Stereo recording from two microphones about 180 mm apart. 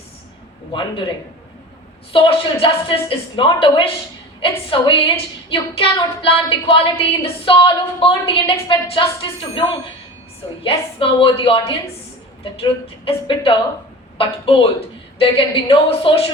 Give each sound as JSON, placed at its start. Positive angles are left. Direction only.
{"t": 0.7, "sound": "a woman's voice", "side_deg": 25}
{"t": 2.1, "sound": "a woman's voice", "side_deg": 30}
{"t": 10.6, "sound": "a woman's voice", "side_deg": 30}